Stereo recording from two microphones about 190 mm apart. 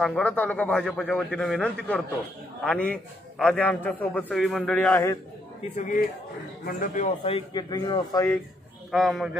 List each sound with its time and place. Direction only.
0.0 s a man's voice: 5° left (ahead or behind)
5.8 s speech: 45° left (ahead or behind)
7.2 s a man's voice: 25° left (ahead or behind)
8.9 s a man's voice: centre (ahead or behind)